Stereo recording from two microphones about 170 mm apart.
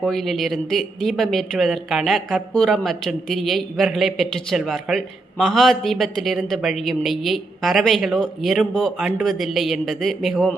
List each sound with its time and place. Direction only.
0.0 s speech: centre (ahead or behind)